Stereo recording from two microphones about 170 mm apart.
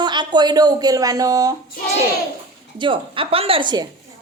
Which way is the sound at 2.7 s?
30° right (ahead or behind).